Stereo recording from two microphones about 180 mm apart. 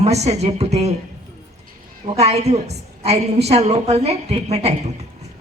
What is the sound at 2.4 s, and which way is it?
A woman's voice, 35° right (ahead or behind).